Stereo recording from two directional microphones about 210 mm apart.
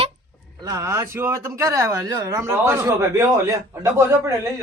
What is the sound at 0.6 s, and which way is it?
Speech, 15° right (ahead or behind).